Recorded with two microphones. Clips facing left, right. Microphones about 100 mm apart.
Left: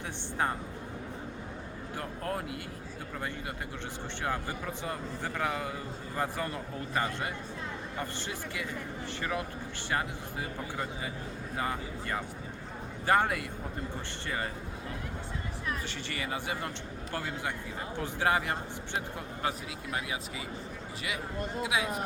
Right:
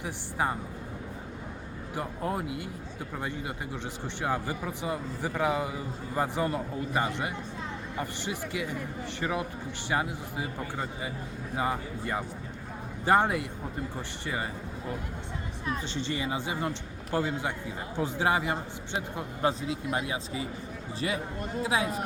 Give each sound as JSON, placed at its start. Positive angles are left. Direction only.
{"t": 2.0, "sound": "a man's voice", "side_deg": -20}
{"t": 4.2, "sound": "a man's voice", "side_deg": -15}
{"t": 15.6, "sound": "a man's voice", "side_deg": -25}
{"t": 21.6, "sound": "speech", "side_deg": -35}